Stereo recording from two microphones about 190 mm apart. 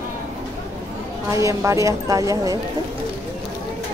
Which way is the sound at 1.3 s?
15° right (ahead or behind).